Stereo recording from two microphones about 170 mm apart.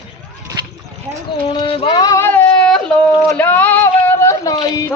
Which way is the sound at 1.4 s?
35° left (ahead or behind).